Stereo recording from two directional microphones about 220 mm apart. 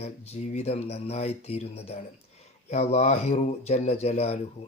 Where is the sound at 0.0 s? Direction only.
30° left (ahead or behind).